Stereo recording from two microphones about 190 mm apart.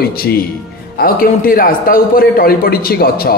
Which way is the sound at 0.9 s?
50° left (ahead or behind).